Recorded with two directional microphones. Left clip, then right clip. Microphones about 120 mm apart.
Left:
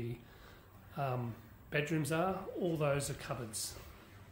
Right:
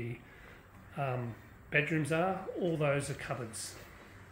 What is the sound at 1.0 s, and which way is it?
Speech, 20° left (ahead or behind).